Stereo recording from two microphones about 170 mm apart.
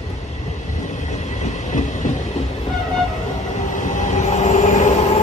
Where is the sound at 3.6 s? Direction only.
45° left (ahead or behind).